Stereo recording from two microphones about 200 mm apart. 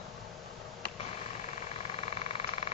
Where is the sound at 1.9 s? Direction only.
30° left (ahead or behind).